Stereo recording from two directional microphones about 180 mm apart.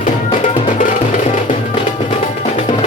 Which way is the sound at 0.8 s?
50° left (ahead or behind).